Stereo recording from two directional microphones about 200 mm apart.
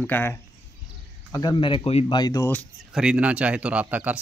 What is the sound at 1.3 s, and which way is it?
Speech, 20° left (ahead or behind).